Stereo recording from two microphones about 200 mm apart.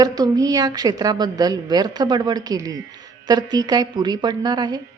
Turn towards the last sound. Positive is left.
turn(degrees=-20)  # may be behind; listen again after turning